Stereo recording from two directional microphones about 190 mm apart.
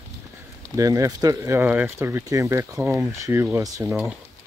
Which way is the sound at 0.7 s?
15° right (ahead or behind).